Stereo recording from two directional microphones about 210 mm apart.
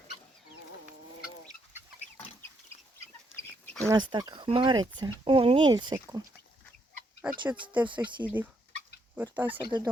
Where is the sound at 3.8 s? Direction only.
20° right (ahead or behind).